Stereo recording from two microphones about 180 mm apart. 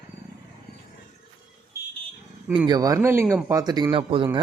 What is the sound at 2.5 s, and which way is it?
Speech, 25° right (ahead or behind).